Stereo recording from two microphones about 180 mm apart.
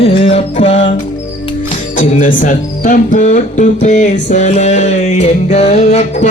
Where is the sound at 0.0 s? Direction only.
40° left (ahead or behind).